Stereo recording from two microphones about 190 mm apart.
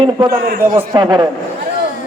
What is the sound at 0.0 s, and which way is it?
A man's voice, 20° right (ahead or behind).